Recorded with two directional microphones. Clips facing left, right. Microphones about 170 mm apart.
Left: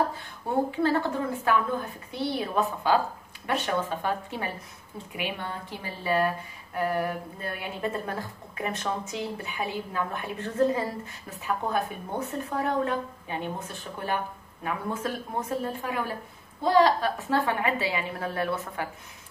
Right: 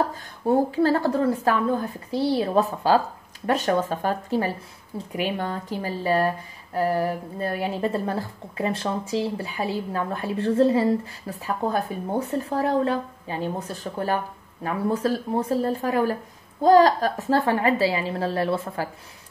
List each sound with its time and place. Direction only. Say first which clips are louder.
0.7 s speech: right 5 dB; 35° right (ahead or behind)